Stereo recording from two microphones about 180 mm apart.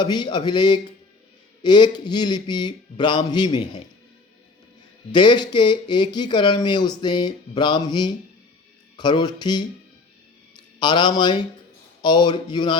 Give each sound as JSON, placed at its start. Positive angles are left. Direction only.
{"t": 0.0, "sound": "speech", "side_deg": 25}
{"t": 5.1, "sound": "speech", "side_deg": 25}
{"t": 10.8, "sound": "speech", "side_deg": 25}